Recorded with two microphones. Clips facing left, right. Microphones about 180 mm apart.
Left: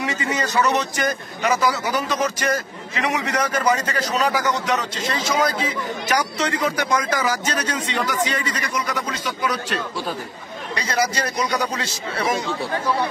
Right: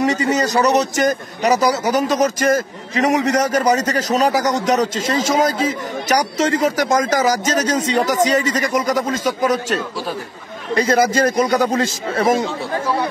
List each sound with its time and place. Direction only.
0.0 s a man's voice: 40° right (ahead or behind)